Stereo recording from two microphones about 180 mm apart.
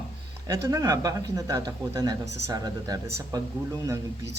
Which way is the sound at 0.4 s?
15° right (ahead or behind).